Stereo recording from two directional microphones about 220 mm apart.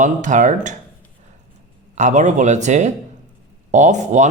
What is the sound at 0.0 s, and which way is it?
Speech, 35° right (ahead or behind).